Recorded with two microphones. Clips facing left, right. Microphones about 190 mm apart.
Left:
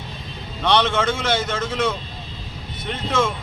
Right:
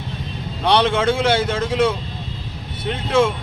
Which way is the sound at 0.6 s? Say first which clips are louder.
Right 2 dB; 10° right (ahead or behind).